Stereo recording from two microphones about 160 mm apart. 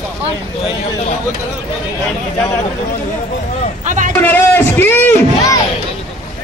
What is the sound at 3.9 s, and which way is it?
Speech, 50° right (ahead or behind).